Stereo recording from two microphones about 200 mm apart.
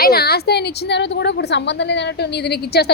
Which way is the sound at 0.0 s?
50° left (ahead or behind).